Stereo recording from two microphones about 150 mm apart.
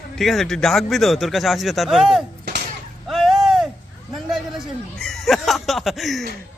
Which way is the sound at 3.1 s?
Centre (ahead or behind).